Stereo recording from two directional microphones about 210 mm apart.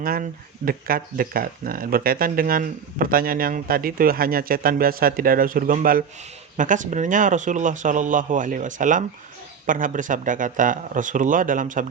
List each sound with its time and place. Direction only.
0.0 s a man's voice: 45° right (ahead or behind)